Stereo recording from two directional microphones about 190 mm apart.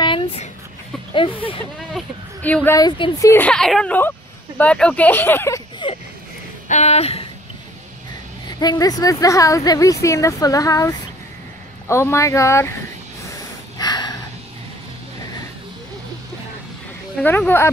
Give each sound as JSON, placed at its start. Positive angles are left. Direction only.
{"t": 1.1, "sound": "speech", "side_deg": 25}
{"t": 1.8, "sound": "a woman's voice", "side_deg": 5}
{"t": 5.8, "sound": "speech", "side_deg": 25}
{"t": 6.7, "sound": "speech", "side_deg": 35}
{"t": 8.5, "sound": "a woman's voice", "side_deg": 20}
{"t": 13.7, "sound": "a sound", "side_deg": 20}
{"t": 17.2, "sound": "a woman's voice", "side_deg": 10}